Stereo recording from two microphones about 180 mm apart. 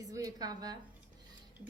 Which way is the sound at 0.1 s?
20° right (ahead or behind).